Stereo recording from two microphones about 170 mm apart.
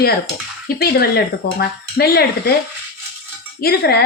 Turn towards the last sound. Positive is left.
turn(degrees=70)  # may be behind; listen again after turning